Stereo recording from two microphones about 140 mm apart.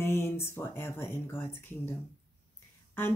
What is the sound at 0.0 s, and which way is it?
Speech, 20° left (ahead or behind).